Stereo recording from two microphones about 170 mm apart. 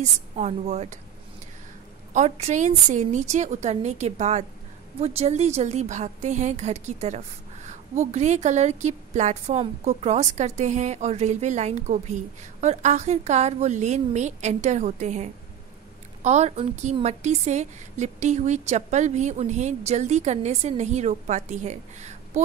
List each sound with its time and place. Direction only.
0.0 s a woman's voice: 40° right (ahead or behind)
2.1 s a woman's voice: 40° right (ahead or behind)